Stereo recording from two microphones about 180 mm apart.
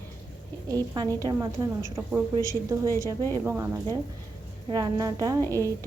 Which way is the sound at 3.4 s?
15° right (ahead or behind).